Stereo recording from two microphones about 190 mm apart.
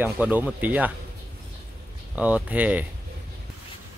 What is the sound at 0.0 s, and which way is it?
Speech, 10° right (ahead or behind).